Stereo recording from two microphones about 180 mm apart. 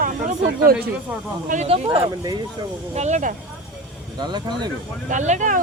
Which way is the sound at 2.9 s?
40° right (ahead or behind).